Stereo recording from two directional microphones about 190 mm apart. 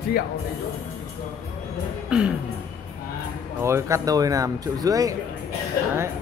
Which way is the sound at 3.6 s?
15° right (ahead or behind).